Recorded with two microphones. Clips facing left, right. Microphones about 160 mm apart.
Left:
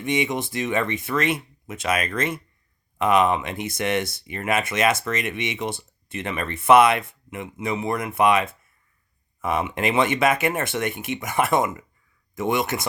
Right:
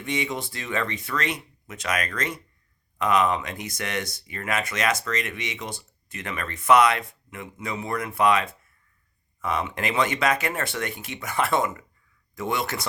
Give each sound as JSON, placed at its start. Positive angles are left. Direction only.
{"t": 0.0, "sound": "speech", "side_deg": 20}